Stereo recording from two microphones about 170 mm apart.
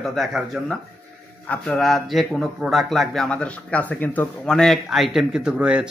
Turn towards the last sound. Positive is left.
turn(degrees=-5)  # may be behind; listen again after turning